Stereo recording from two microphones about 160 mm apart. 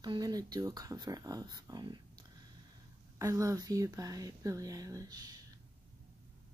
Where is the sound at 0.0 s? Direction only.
25° right (ahead or behind).